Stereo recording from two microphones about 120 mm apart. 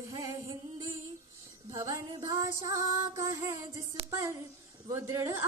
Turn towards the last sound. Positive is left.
turn(degrees=-20)  # may be behind; listen again after turning